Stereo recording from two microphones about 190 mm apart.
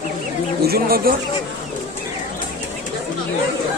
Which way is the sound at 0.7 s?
50° right (ahead or behind).